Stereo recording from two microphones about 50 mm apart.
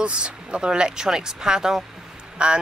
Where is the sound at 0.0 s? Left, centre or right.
Centre.